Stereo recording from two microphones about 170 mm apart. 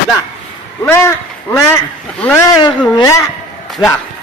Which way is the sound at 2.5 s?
25° left (ahead or behind).